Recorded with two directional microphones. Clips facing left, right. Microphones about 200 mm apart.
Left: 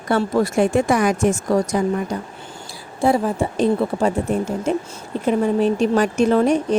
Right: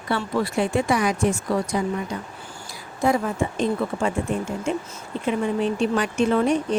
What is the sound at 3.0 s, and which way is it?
A woman's voice, 30° left (ahead or behind).